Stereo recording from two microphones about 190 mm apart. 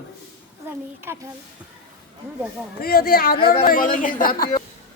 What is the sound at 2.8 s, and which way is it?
A man's voice, 50° left (ahead or behind).